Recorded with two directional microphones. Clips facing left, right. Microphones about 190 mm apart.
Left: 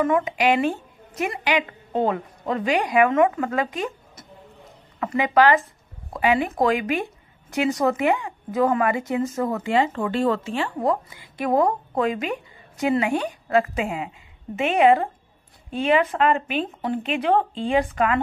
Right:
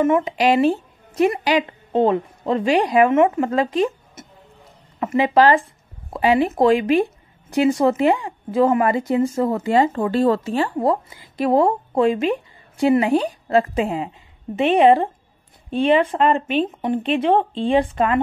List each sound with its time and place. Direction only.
0.0 s speech: 30° right (ahead or behind)
1.9 s a woman's voice: 25° right (ahead or behind)